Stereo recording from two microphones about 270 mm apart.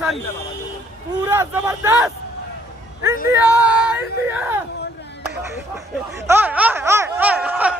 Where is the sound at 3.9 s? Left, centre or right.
Centre.